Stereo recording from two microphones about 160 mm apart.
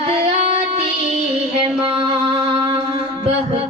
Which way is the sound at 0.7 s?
40° right (ahead or behind).